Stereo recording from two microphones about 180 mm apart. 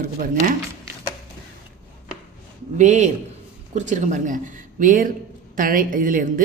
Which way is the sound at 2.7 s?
40° right (ahead or behind).